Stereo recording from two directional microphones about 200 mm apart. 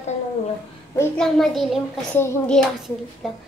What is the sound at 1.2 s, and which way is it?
A child's voice, centre (ahead or behind).